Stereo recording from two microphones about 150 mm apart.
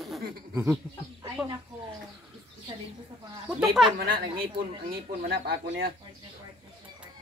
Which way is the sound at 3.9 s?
75° right (ahead or behind).